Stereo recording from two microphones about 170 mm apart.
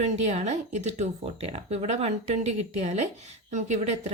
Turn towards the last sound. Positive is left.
turn(degrees=-40)  # may be behind; listen again after turning